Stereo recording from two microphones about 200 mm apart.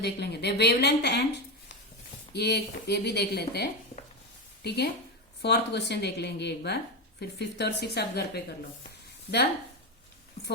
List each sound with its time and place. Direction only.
0.0 s speech: 55° left (ahead or behind)
2.3 s speech: 55° left (ahead or behind)